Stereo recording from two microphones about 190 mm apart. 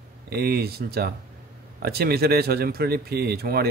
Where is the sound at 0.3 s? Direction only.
55° right (ahead or behind).